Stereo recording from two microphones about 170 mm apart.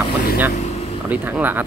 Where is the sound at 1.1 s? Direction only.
10° right (ahead or behind).